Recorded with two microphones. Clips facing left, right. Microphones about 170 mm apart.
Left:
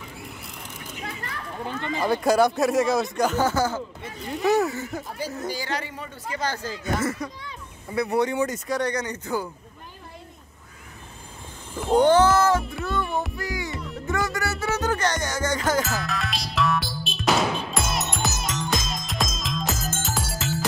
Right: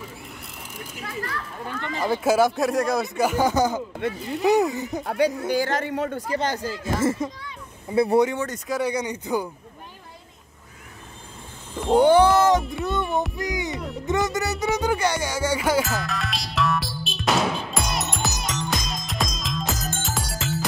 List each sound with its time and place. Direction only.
1.7 s speech: 20° left (ahead or behind)
2.0 s speech: 5° right (ahead or behind)
4.4 s music: 15° right (ahead or behind)
5.0 s speech: 70° right (ahead or behind)
5.5 s a man's voice: 50° right (ahead or behind)
6.8 s music: 25° right (ahead or behind)
8.6 s music: 5° right (ahead or behind)
11.7 s a sound: centre (ahead or behind)
12.0 s music: 15° right (ahead or behind)
12.6 s speech: centre (ahead or behind)
13.4 s music: 20° right (ahead or behind)
15.8 s music: centre (ahead or behind)